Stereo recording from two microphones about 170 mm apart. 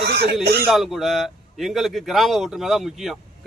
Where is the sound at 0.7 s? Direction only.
Centre (ahead or behind).